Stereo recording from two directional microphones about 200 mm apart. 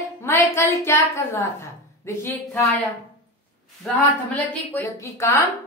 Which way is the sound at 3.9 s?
10° left (ahead or behind).